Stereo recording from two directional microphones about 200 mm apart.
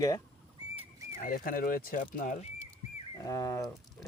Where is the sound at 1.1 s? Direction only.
45° left (ahead or behind).